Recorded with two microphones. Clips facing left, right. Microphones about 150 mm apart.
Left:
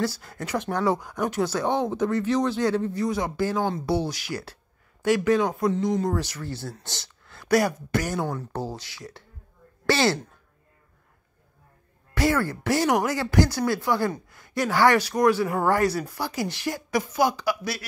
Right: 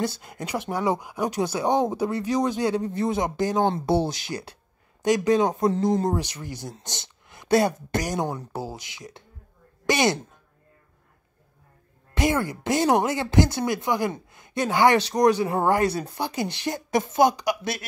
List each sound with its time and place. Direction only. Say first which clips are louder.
0.0 s speech: even; 20° right (ahead or behind)
6.1 s speech: even; 15° right (ahead or behind)
12.1 s speech: even; 20° right (ahead or behind)